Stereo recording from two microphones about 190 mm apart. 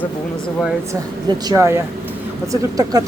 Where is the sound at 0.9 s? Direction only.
20° right (ahead or behind).